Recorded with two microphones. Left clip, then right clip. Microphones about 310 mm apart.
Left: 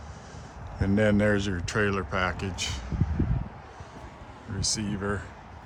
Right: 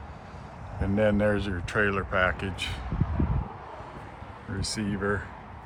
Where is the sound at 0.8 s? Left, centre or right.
Left.